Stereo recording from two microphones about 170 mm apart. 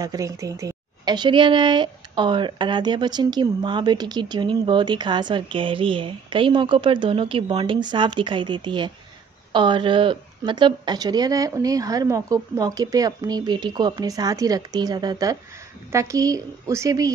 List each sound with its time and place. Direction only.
0.0 s speech: 20° right (ahead or behind)